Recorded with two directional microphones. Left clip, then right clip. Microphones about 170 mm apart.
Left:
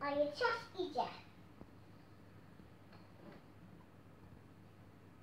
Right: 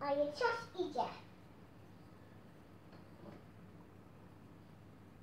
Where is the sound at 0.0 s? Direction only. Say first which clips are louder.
Right 1 dB; centre (ahead or behind).